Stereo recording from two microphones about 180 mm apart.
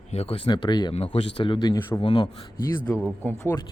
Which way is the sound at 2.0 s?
25° left (ahead or behind).